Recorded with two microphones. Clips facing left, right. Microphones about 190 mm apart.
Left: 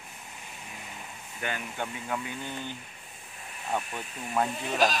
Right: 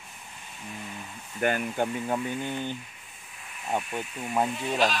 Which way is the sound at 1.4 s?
45° right (ahead or behind).